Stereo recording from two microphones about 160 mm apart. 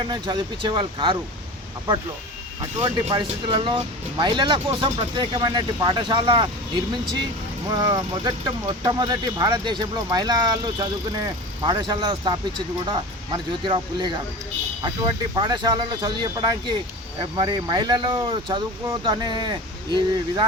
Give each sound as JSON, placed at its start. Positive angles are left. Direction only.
{"t": 0.0, "sound": "speech", "side_deg": -25}
{"t": 2.6, "sound": "speech", "side_deg": -30}
{"t": 7.7, "sound": "speech", "side_deg": -25}